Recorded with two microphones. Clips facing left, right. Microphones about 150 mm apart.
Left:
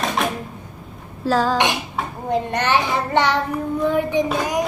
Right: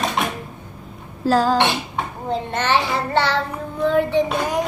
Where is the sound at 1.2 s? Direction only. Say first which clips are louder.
Right 2 dB; centre (ahead or behind).